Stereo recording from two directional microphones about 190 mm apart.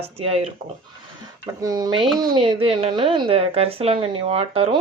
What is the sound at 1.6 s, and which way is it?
A woman's voice, 20° right (ahead or behind).